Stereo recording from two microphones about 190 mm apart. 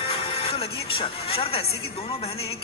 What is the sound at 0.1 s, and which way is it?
Speech, 30° left (ahead or behind).